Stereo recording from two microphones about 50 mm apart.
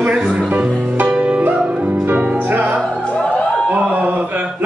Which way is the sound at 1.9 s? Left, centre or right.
Right.